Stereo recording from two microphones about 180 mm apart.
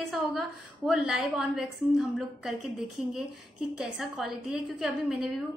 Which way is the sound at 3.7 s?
Centre (ahead or behind).